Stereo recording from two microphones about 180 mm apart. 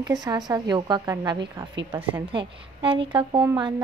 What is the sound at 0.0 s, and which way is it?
A woman's voice, 20° right (ahead or behind).